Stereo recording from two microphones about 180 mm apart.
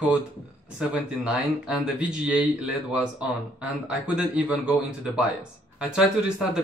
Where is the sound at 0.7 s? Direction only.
5° right (ahead or behind).